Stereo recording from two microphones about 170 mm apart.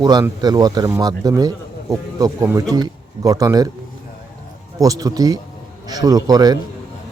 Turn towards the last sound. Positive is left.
turn(degrees=-20)  # may be behind; listen again after turning